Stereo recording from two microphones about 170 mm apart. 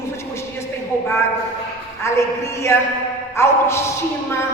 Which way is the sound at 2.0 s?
15° left (ahead or behind).